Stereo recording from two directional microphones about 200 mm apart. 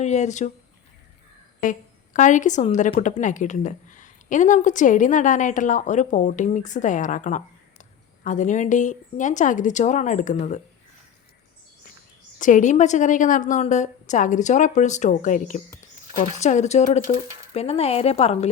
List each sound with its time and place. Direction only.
0.0 s speech: 35° left (ahead or behind)
2.1 s speech: 40° left (ahead or behind)
12.4 s speech: 40° left (ahead or behind)